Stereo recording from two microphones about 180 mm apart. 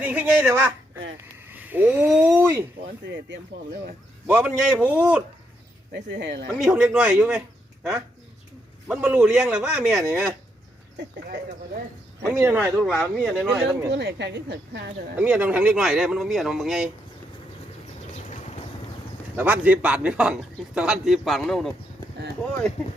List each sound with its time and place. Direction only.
0.0 s speech: 10° right (ahead or behind)
2.8 s speech: 75° right (ahead or behind)
4.3 s speech: 5° right (ahead or behind)
5.9 s speech: 75° right (ahead or behind)
6.6 s a man's voice: 5° right (ahead or behind)
8.9 s a man's voice: 5° right (ahead or behind)
12.3 s a man's voice: 10° right (ahead or behind)
13.6 s speech: 70° right (ahead or behind)
15.2 s a man's voice: 10° right (ahead or behind)
19.4 s a man's voice: 10° right (ahead or behind)